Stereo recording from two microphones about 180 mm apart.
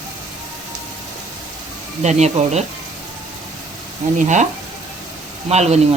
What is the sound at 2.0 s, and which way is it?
Speech, 40° right (ahead or behind).